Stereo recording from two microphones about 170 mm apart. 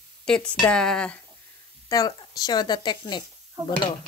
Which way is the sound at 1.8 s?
20° left (ahead or behind).